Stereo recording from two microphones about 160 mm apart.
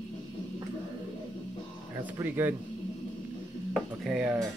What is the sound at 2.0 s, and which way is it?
Speech, 10° right (ahead or behind).